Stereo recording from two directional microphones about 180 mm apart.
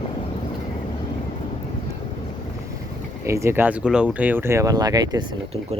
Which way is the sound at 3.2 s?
15° right (ahead or behind).